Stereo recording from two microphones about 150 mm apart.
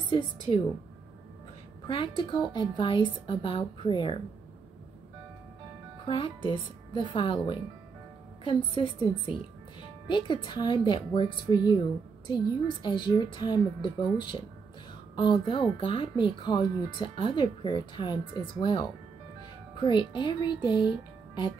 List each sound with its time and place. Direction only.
1.9 s speech: 35° left (ahead or behind)
6.0 s speech: 35° left (ahead or behind)